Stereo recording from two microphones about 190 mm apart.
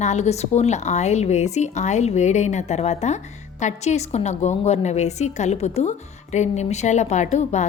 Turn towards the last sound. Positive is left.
turn(degrees=35)  # may be behind; listen again after turning